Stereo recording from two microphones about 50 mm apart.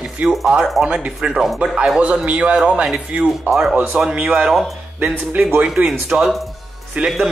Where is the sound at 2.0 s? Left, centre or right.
Right.